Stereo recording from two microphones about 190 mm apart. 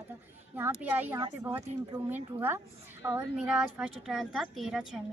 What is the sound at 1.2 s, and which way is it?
Speech, 25° right (ahead or behind).